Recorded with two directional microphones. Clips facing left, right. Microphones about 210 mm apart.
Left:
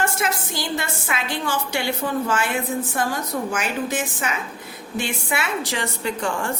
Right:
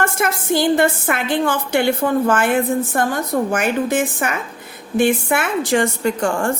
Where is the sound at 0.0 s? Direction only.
55° right (ahead or behind).